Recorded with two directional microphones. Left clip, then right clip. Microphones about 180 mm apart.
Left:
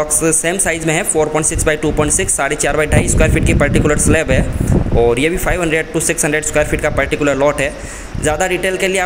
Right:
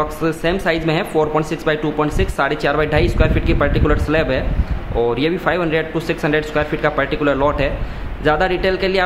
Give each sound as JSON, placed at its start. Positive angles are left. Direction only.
{"t": 0.2, "sound": "speech", "side_deg": 15}